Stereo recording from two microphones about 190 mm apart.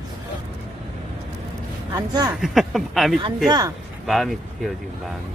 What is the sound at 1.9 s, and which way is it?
Speech, 20° right (ahead or behind).